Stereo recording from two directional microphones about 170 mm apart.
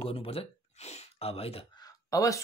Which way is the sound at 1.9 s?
20° left (ahead or behind).